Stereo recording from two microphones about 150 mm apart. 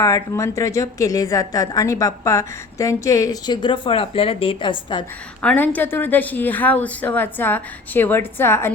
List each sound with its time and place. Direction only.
0.0 s a woman's voice: 20° left (ahead or behind)
5.4 s a woman's voice: 10° left (ahead or behind)